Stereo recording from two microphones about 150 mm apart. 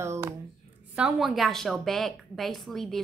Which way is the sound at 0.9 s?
5° right (ahead or behind).